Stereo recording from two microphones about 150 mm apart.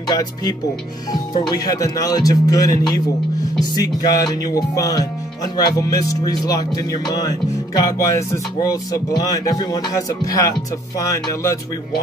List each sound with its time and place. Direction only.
0.1 s speech: 25° left (ahead or behind)